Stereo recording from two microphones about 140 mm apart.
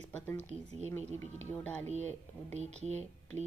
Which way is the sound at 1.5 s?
10° left (ahead or behind).